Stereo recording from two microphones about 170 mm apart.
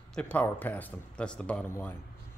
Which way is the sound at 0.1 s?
5° left (ahead or behind).